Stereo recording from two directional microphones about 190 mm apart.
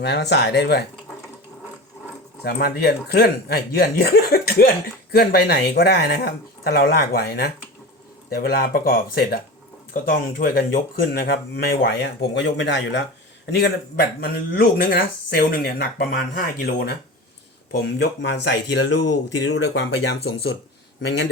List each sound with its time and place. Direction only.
0.0 s speech: 60° left (ahead or behind)
2.4 s speech: 55° left (ahead or behind)
13.5 s speech: 60° left (ahead or behind)
18.2 s speech: 65° left (ahead or behind)